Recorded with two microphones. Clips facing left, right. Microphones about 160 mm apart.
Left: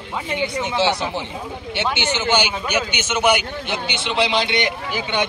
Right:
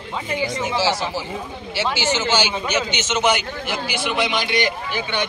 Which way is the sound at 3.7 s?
25° left (ahead or behind).